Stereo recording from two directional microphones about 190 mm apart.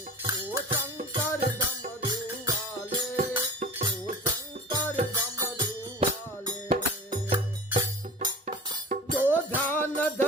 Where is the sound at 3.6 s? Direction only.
35° right (ahead or behind).